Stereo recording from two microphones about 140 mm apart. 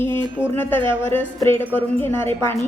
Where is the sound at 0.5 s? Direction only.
15° left (ahead or behind).